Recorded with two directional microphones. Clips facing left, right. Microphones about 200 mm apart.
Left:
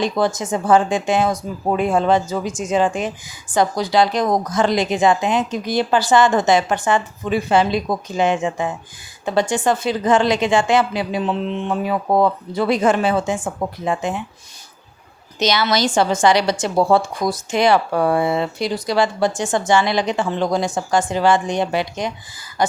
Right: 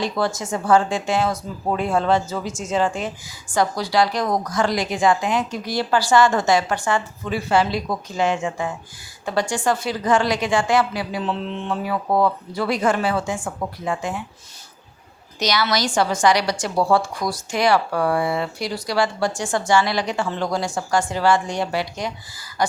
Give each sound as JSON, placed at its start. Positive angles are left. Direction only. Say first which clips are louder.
{"t": 0.0, "sound": "a woman's voice", "louder": "left 4 dB", "side_deg": 20}
{"t": 15.4, "sound": "a woman's voice", "louder": "left 3 dB", "side_deg": 25}